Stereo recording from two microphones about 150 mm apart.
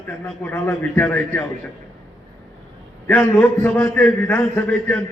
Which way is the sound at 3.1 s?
10° left (ahead or behind).